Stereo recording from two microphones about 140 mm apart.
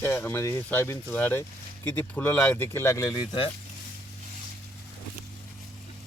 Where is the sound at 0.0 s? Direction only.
15° left (ahead or behind); by 3.5 s 30° left (ahead or behind).